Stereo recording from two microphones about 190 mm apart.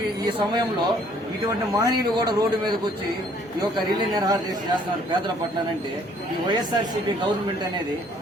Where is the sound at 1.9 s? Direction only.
20° right (ahead or behind).